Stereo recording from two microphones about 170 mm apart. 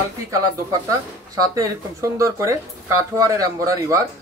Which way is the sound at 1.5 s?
15° right (ahead or behind).